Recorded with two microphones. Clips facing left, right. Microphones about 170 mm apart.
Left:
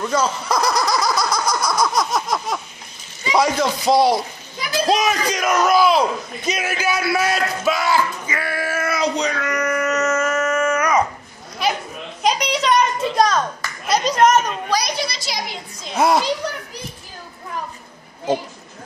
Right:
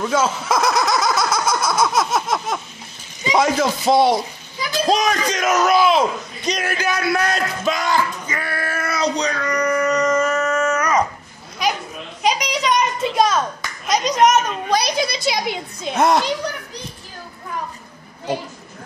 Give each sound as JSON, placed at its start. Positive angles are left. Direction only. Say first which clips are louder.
{"t": 0.0, "sound": "giggle", "louder": "right 1 dB", "side_deg": -5}
{"t": 3.3, "sound": "speech", "louder": "even", "side_deg": -5}
{"t": 9.2, "sound": "a sound", "louder": "right 1 dB", "side_deg": 5}
{"t": 12.2, "sound": "a sound", "louder": "left 1 dB", "side_deg": -5}
{"t": 13.8, "sound": "clapping", "louder": "even", "side_deg": 5}
{"t": 14.1, "sound": "a child's voice", "louder": "even", "side_deg": -20}
{"t": 15.0, "sound": "a woman's voice", "louder": "right 6 dB", "side_deg": -55}
{"t": 15.9, "sound": "speech", "louder": "right 1 dB", "side_deg": 0}